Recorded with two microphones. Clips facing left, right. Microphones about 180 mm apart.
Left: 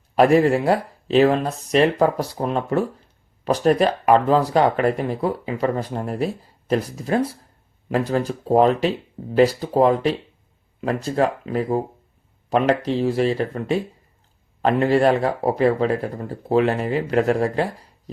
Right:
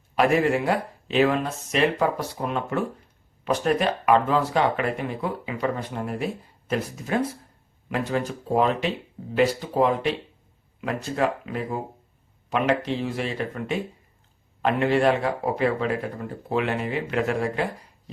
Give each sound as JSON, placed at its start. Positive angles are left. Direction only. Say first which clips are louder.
{"t": 0.2, "sound": "speech", "louder": "left 5 dB", "side_deg": 35}